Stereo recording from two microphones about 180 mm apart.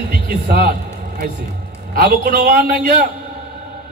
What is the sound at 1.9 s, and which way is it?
A man's voice, 55° right (ahead or behind).